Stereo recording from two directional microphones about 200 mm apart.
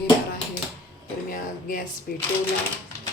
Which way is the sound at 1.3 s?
45° left (ahead or behind).